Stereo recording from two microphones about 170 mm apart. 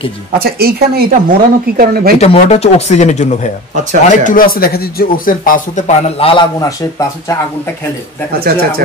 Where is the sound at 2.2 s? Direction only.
40° left (ahead or behind).